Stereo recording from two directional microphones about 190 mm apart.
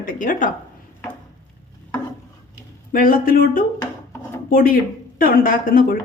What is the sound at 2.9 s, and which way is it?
A woman's voice, 45° left (ahead or behind).